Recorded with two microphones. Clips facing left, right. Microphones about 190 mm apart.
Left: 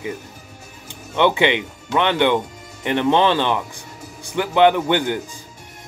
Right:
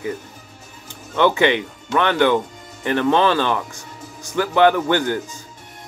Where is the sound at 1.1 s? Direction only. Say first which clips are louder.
Right 1 dB; 20° left (ahead or behind).